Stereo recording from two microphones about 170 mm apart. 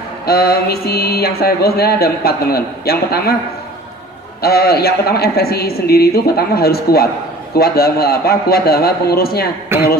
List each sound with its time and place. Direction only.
0.3 s speech: 65° left (ahead or behind)
4.4 s speech: 65° left (ahead or behind)
9.7 s speech: 15° right (ahead or behind)